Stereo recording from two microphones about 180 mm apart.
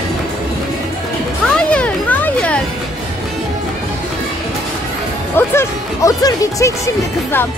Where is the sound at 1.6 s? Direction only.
5° left (ahead or behind).